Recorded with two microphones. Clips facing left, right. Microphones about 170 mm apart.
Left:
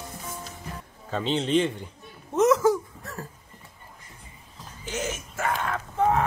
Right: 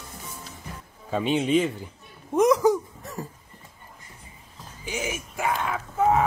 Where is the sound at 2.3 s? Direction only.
15° right (ahead or behind).